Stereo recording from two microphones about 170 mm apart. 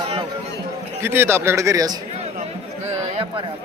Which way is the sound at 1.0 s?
15° right (ahead or behind).